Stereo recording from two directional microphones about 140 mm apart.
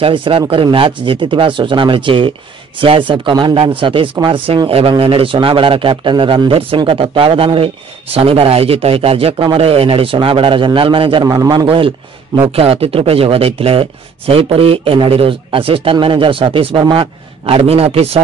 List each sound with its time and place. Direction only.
0.0 s speech: 40° right (ahead or behind)
11.6 s a man's voice: 40° right (ahead or behind)